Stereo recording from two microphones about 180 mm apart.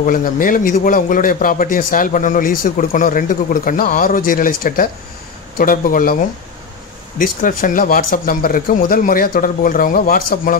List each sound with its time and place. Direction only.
0.0 s a man's voice: 50° left (ahead or behind)
7.2 s a man's voice: 50° left (ahead or behind)